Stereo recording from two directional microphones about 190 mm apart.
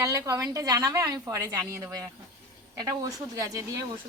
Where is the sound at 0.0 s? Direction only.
15° right (ahead or behind).